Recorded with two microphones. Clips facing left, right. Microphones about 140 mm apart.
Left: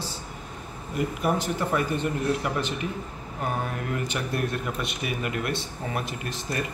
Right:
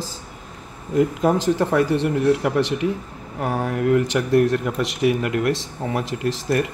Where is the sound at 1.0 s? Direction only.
90° right.